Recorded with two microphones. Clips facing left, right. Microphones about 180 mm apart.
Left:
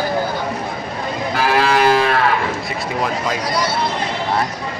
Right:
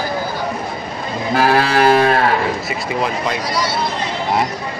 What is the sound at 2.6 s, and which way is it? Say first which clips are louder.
Speech: right 1 dB; centre (ahead or behind).